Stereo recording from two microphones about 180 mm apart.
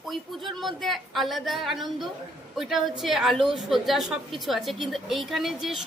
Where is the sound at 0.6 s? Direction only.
Centre (ahead or behind).